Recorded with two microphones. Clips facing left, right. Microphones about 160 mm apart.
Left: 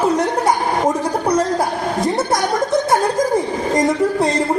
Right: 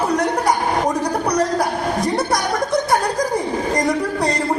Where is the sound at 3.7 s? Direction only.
20° left (ahead or behind).